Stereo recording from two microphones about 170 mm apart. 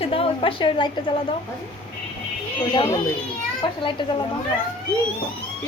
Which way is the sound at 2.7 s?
30° left (ahead or behind).